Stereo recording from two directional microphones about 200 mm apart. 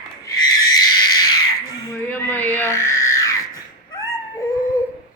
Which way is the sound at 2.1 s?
10° left (ahead or behind).